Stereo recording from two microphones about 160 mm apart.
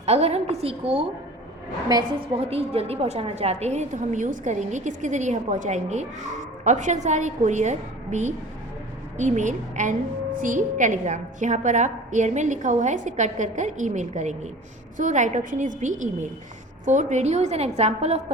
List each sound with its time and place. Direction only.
0.0 s a woman's voice: 40° right (ahead or behind)
1.9 s a woman's voice: 30° right (ahead or behind)